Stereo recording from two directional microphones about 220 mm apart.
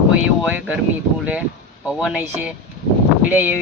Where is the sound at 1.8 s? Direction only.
5° right (ahead or behind).